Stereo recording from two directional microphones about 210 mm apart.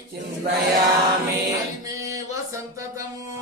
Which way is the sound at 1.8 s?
15° right (ahead or behind).